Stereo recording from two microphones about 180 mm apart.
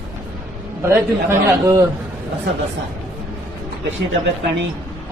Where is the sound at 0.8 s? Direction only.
15° right (ahead or behind).